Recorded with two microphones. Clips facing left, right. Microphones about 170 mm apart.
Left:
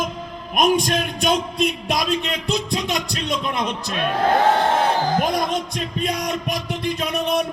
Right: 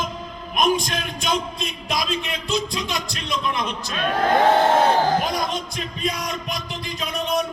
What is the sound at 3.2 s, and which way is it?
Speech, 55° left (ahead or behind).